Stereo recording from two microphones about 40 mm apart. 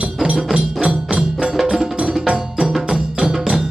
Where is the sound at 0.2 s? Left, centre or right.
Centre.